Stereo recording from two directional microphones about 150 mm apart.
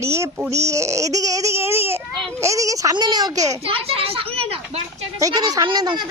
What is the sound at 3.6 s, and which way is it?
Children playing, 40° right (ahead or behind).